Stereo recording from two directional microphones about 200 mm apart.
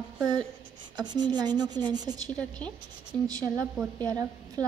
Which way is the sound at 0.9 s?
20° right (ahead or behind).